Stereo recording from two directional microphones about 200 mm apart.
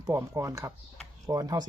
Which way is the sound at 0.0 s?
15° right (ahead or behind).